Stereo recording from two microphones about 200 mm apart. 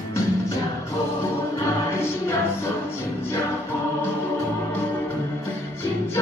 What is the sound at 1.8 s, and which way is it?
Music, 15° left (ahead or behind).